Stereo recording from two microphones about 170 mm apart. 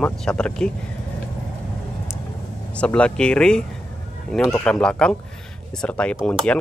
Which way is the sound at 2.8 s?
5° left (ahead or behind).